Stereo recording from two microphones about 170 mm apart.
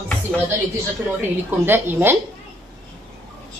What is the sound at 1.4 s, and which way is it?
Speech, 10° right (ahead or behind).